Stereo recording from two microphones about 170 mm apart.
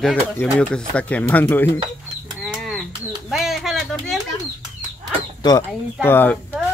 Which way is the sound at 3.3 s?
Centre (ahead or behind).